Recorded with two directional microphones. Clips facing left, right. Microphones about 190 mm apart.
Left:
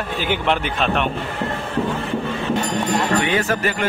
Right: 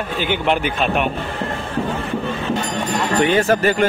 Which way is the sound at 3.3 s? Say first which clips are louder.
Right 5 dB; 35° right (ahead or behind).